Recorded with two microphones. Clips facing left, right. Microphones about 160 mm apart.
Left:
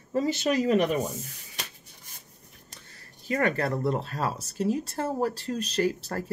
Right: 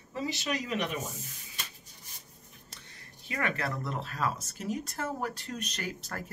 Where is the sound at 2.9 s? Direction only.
40° left (ahead or behind).